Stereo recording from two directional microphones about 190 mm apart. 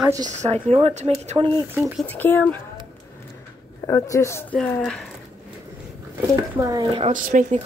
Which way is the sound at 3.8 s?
15° left (ahead or behind).